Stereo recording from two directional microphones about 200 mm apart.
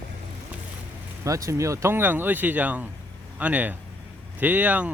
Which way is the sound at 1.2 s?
15° right (ahead or behind).